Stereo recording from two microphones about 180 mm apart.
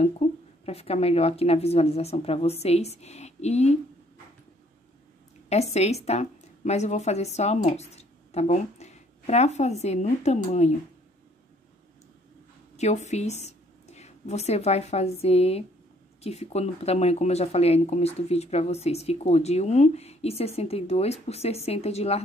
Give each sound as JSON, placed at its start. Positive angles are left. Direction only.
{"t": 0.0, "sound": "speech", "side_deg": 35}
{"t": 5.5, "sound": "speech", "side_deg": 35}
{"t": 12.7, "sound": "a woman's voice", "side_deg": 40}